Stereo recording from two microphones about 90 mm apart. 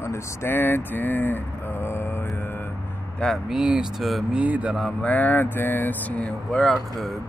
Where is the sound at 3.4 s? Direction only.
10° right (ahead or behind).